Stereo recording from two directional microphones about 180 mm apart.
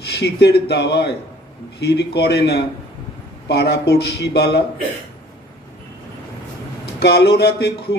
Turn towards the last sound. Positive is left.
turn(degrees=65)  # may be behind; listen again after turning